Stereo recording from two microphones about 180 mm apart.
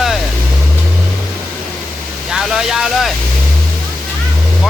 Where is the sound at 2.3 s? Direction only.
Centre (ahead or behind).